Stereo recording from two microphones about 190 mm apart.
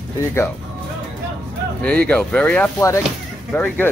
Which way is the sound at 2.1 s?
5° left (ahead or behind).